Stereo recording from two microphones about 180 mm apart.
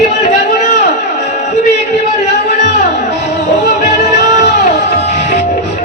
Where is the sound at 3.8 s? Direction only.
40° left (ahead or behind).